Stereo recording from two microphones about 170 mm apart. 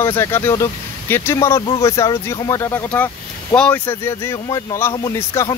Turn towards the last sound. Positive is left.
turn(degrees=20)  # may be behind; listen again after turning